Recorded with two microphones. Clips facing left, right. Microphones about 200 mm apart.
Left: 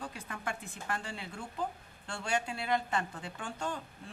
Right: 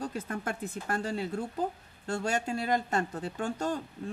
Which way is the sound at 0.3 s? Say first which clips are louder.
Right 6 dB; 45° right (ahead or behind).